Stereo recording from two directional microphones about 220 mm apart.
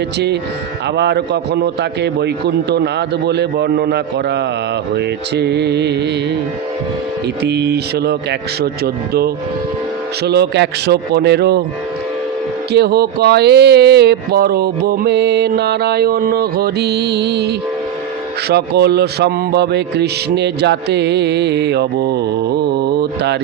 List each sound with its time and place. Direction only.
0.9 s speech: 50° right (ahead or behind)
7.4 s speech: 50° right (ahead or behind)
12.7 s speech: 45° right (ahead or behind)
23.0 s mantra: 50° right (ahead or behind)